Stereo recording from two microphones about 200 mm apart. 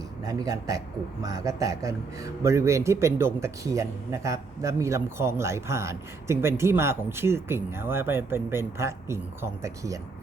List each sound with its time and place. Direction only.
0.3 s speech: 15° right (ahead or behind)